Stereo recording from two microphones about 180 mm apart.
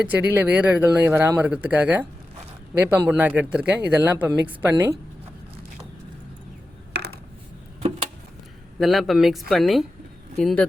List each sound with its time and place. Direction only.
0.0 s speech: 10° right (ahead or behind)
6.9 s a sound: 65° right (ahead or behind)
8.8 s speech: centre (ahead or behind)